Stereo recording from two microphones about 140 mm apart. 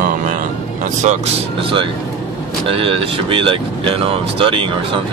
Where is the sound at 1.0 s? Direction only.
45° right (ahead or behind).